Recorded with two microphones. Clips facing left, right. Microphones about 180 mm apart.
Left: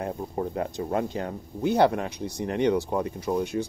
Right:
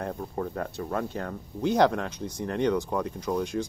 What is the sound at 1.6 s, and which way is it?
Speech, 10° left (ahead or behind).